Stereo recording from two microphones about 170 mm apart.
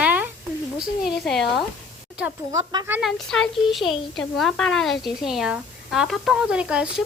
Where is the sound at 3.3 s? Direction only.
Centre (ahead or behind).